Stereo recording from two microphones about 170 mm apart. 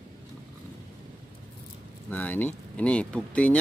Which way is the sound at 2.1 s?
10° left (ahead or behind).